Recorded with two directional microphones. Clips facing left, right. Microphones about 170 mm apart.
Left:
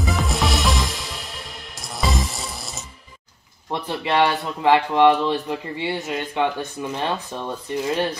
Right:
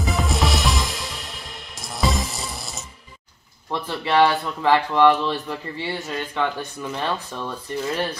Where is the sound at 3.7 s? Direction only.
20° left (ahead or behind).